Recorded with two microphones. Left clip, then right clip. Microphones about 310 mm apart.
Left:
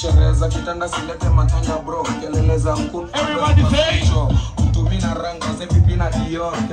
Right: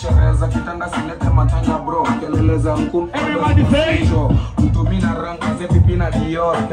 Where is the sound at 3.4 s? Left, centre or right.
Right.